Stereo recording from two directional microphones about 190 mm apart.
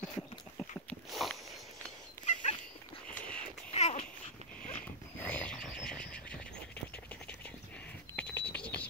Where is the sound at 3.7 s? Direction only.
35° left (ahead or behind).